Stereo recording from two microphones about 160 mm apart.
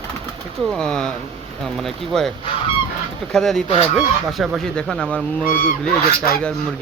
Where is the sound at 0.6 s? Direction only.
Centre (ahead or behind).